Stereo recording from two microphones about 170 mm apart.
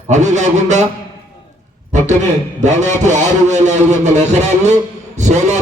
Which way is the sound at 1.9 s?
45° right (ahead or behind).